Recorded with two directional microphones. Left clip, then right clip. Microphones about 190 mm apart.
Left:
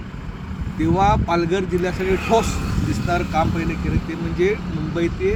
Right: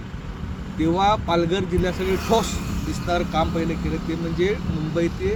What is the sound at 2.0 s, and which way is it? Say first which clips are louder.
Speech: left 3 dB; 50° left (ahead or behind).